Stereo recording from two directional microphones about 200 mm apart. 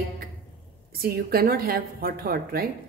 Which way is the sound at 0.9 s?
50° right (ahead or behind).